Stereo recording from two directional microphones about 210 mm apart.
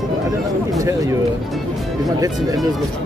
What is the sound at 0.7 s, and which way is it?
Speech, 15° right (ahead or behind).